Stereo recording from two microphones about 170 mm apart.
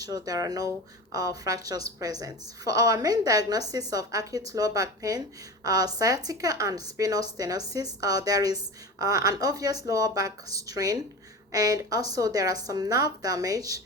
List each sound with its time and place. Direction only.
0.0 s a woman's voice: 20° right (ahead or behind)